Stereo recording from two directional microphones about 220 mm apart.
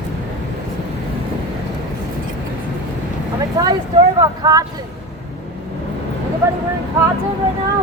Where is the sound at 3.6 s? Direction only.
15° right (ahead or behind).